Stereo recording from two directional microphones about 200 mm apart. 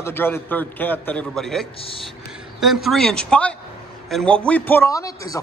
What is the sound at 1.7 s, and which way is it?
Speech, 30° left (ahead or behind).